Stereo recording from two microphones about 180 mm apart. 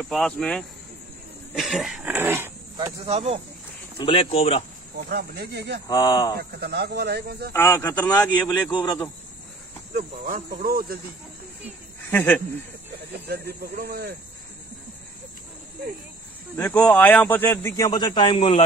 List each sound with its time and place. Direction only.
0.0 s speech: centre (ahead or behind); by 2.9 s 15° right (ahead or behind)
3.1 s speech: 35° right (ahead or behind)
4.0 s speech: 30° left (ahead or behind)
5.1 s speech: 60° right (ahead or behind)
5.9 s speech: 20° left (ahead or behind)
6.6 s speech: 65° right (ahead or behind)
7.5 s speech: 10° left (ahead or behind)
8.7 s speech: 25° left (ahead or behind)
9.9 s speech: 50° right (ahead or behind)
12.1 s speech: 10° left (ahead or behind)
13.1 s speech: 60° right (ahead or behind)
16.5 s speech: 10° left (ahead or behind); by 18.6 s 30° left (ahead or behind)